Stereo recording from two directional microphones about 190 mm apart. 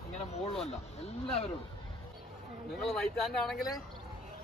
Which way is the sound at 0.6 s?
30° left (ahead or behind).